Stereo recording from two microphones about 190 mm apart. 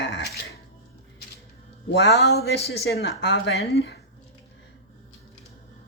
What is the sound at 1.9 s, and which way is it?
Speech, 60° left (ahead or behind).